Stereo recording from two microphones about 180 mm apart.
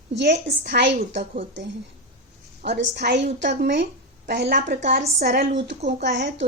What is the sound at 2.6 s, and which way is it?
A woman's voice, 70° right (ahead or behind).